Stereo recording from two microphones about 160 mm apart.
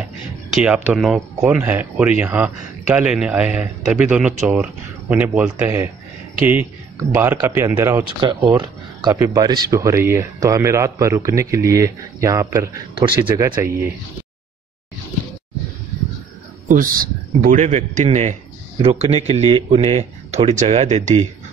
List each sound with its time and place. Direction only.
0.6 s speech: 10° right (ahead or behind)
8.5 s a sound: 25° right (ahead or behind)
9.1 s speech: 20° right (ahead or behind)
12.9 s speech: 30° right (ahead or behind)
13.6 s speech: 15° right (ahead or behind)
16.6 s a man's voice: 60° right (ahead or behind); by 21.3 s 45° right (ahead or behind)